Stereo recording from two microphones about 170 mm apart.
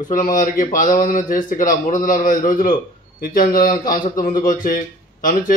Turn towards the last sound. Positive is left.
turn(degrees=50)  # may be behind; listen again after turning